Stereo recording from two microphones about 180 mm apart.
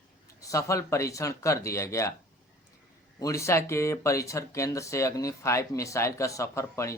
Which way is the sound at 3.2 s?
15° left (ahead or behind).